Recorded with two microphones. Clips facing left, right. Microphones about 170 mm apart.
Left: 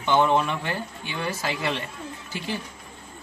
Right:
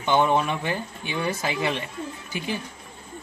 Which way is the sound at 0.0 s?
15° right (ahead or behind).